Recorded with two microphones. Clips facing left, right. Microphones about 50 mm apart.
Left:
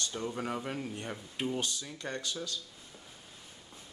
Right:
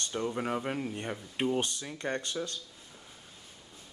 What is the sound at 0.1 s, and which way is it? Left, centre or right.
Speech, right.